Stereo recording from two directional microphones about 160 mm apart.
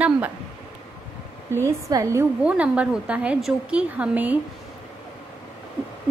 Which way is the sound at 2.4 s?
10° right (ahead or behind).